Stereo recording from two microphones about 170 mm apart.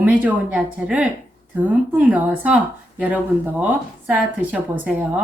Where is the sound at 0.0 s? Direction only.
10° right (ahead or behind).